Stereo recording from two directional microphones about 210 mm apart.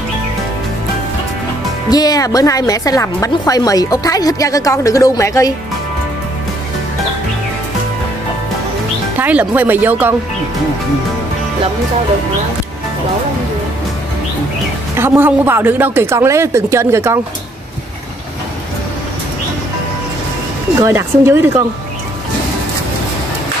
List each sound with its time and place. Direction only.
1.9 s speech: 15° left (ahead or behind)
9.2 s a woman's voice: 10° right (ahead or behind)
15.0 s a woman's voice: 10° right (ahead or behind)
20.8 s a woman's voice: 10° right (ahead or behind)